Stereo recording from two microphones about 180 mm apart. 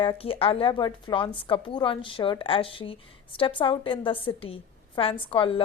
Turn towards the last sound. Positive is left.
turn(degrees=30)  # may be behind; listen again after turning